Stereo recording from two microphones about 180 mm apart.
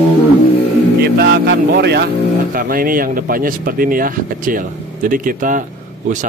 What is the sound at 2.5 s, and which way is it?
Speech, 50° right (ahead or behind).